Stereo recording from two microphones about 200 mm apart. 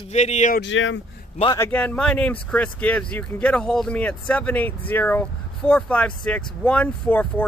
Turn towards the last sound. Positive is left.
turn(degrees=5)  # may be behind; listen again after turning